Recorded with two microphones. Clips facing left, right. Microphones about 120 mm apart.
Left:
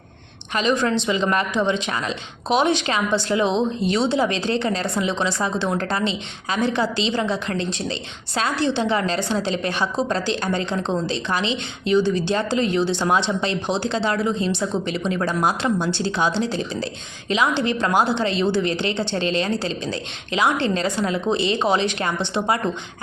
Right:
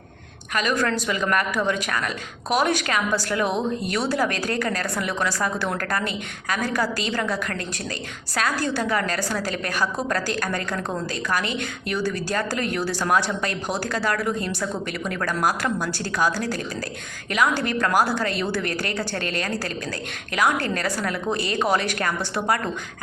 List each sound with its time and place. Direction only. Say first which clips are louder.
0.5 s a woman's voice: left 3 dB; 25° left (ahead or behind)